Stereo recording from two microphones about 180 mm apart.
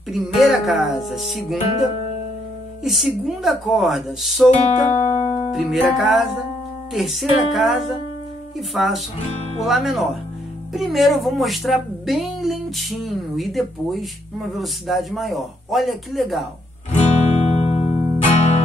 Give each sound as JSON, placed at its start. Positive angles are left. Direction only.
{"t": 0.1, "sound": "a woman's voice", "side_deg": 0}
{"t": 2.8, "sound": "a woman's voice", "side_deg": 0}
{"t": 4.5, "sound": "music", "side_deg": 40}
{"t": 5.5, "sound": "a woman's voice", "side_deg": 0}
{"t": 16.9, "sound": "music", "side_deg": 40}